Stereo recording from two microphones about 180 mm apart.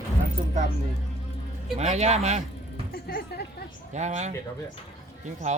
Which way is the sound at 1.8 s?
40° right (ahead or behind).